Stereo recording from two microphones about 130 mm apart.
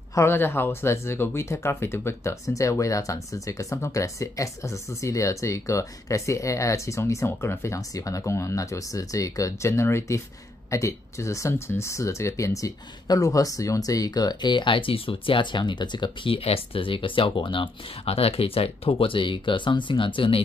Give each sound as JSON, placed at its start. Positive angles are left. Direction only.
{"t": 0.1, "sound": "speech", "side_deg": 20}